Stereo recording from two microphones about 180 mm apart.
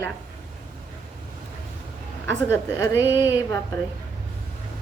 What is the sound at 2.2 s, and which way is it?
A woman's voice, 15° left (ahead or behind).